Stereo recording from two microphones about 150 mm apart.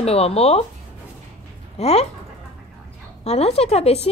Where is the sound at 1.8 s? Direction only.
45° left (ahead or behind).